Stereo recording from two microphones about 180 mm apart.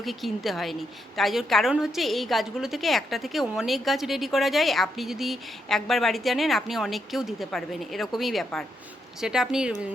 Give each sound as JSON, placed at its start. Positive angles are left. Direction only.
{"t": 0.0, "sound": "a woman's voice", "side_deg": 0}